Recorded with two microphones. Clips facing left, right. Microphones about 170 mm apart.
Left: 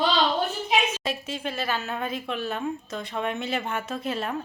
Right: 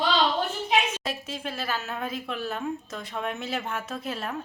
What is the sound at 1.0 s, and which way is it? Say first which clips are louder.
Speech: left 3 dB; centre (ahead or behind).